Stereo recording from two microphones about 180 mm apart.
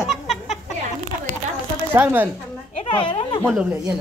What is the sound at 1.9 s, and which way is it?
Speech, 10° right (ahead or behind).